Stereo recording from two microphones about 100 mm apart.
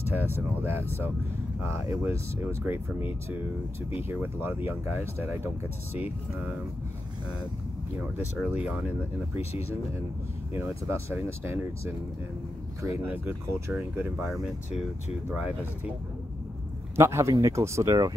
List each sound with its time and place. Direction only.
0.1 s speech: 20° right (ahead or behind)
5.9 s speech: 15° right (ahead or behind)
8.5 s speech: 15° right (ahead or behind)
9.4 s speech: 90° left
10.5 s speech: 25° right (ahead or behind)
15.2 s speech: 15° right (ahead or behind)
16.9 s speech: 25° right (ahead or behind)